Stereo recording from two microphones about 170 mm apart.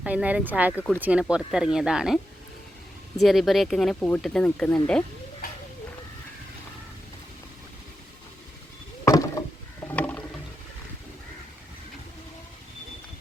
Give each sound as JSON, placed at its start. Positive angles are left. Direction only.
{"t": 0.0, "sound": "speech", "side_deg": -10}
{"t": 3.2, "sound": "speech", "side_deg": 0}
{"t": 9.0, "sound": "a sound", "side_deg": 15}
{"t": 9.8, "sound": "ratchet", "side_deg": 10}